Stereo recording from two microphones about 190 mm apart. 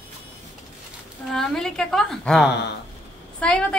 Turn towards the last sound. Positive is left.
turn(degrees=5)  # may be behind; listen again after turning